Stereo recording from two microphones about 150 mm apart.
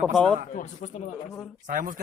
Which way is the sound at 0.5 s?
50° left (ahead or behind).